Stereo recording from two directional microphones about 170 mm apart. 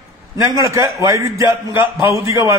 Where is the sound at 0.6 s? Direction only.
15° right (ahead or behind).